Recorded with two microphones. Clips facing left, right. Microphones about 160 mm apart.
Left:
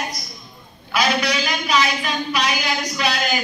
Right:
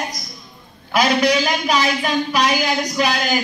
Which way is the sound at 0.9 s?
45° right (ahead or behind).